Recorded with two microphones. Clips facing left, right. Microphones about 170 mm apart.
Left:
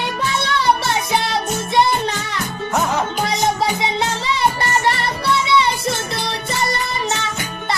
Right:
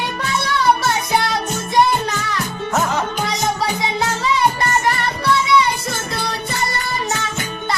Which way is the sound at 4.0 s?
25° left (ahead or behind).